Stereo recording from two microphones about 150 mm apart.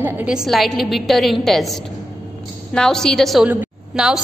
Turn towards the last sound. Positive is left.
turn(degrees=-5)  # may be behind; listen again after turning